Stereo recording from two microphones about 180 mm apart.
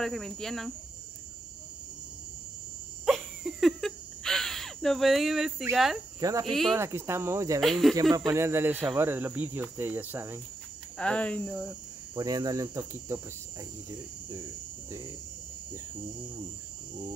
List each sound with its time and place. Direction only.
0.0 s speech: 5° left (ahead or behind)
3.1 s a sound: centre (ahead or behind)
6.1 s speech: 20° right (ahead or behind)
6.5 s speech: centre (ahead or behind)
6.8 s speech: 15° right (ahead or behind)
7.6 s speech: centre (ahead or behind)
7.9 s speech: 25° right (ahead or behind)
11.0 s speech: 5° left (ahead or behind)
12.2 s speech: 25° right (ahead or behind)
12.7 s speech: 10° right (ahead or behind)